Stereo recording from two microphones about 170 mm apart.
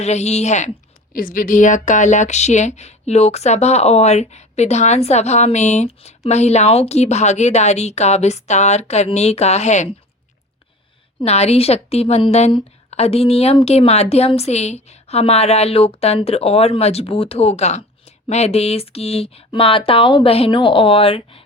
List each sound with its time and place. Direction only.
0.0 s a woman's voice: 40° left (ahead or behind)
1.1 s a woman's voice: 55° left (ahead or behind)
11.2 s a woman's voice: 40° left (ahead or behind)